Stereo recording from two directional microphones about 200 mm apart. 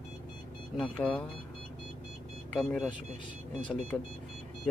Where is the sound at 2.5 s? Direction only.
5° left (ahead or behind).